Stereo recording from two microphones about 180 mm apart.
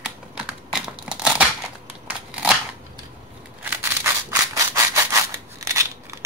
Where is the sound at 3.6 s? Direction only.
15° right (ahead or behind).